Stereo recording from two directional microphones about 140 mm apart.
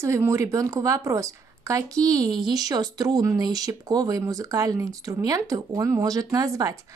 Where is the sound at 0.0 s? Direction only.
20° right (ahead or behind).